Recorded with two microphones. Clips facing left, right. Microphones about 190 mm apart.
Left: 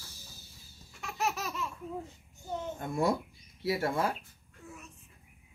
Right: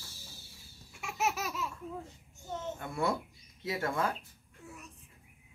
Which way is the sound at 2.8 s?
40° left (ahead or behind).